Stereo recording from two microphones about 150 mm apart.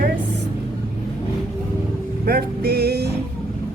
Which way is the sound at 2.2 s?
90° right.